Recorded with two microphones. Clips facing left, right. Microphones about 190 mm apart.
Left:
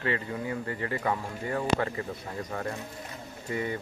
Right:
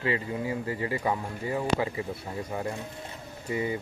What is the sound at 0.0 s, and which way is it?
Speech, 15° right (ahead or behind).